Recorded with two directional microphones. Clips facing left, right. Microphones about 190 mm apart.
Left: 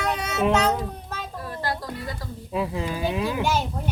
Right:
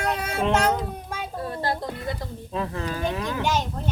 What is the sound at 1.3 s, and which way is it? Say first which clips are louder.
Speech: right 3 dB; 25° right (ahead or behind).